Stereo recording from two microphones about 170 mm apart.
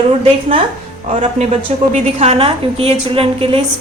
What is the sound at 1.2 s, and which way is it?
A woman's voice, 40° right (ahead or behind).